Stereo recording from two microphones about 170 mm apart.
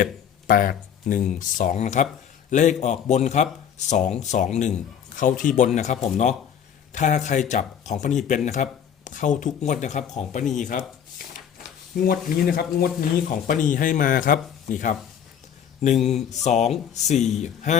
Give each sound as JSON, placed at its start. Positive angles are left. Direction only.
{"t": 0.0, "sound": "a sound", "side_deg": 55}
{"t": 1.4, "sound": "speech", "side_deg": 50}
{"t": 12.4, "sound": "speech", "side_deg": 60}
{"t": 15.8, "sound": "speech", "side_deg": 40}